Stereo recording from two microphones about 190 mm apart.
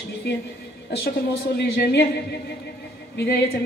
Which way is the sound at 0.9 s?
60° left (ahead or behind).